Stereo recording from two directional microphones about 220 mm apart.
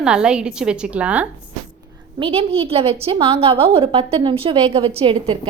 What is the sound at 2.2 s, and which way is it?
A woman's voice, 25° right (ahead or behind).